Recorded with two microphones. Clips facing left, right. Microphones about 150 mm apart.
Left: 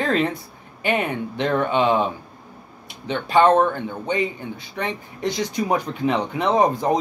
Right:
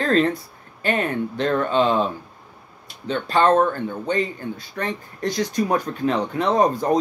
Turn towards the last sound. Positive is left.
turn(degrees=15)  # may be behind; listen again after turning